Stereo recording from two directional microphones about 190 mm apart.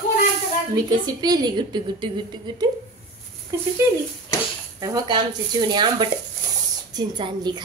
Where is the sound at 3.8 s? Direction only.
15° right (ahead or behind).